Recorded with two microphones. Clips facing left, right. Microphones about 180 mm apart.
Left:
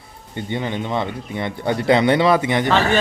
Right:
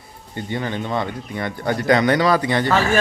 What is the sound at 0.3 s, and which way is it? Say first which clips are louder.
Speech: left 1 dB; 20° left (ahead or behind).